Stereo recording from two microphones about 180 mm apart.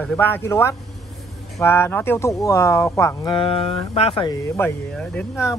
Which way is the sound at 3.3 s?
30° left (ahead or behind).